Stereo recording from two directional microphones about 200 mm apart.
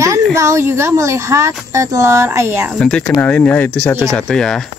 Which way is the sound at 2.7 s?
5° left (ahead or behind).